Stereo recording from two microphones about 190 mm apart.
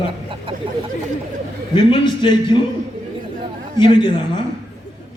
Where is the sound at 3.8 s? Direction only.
25° left (ahead or behind).